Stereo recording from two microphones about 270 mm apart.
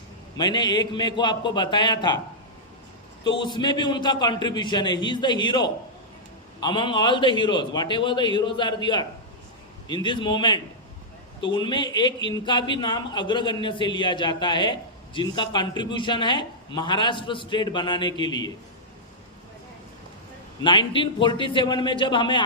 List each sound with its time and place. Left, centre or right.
0.3 s a man's voice: centre
3.2 s a man's voice: centre
20.6 s a man's voice: centre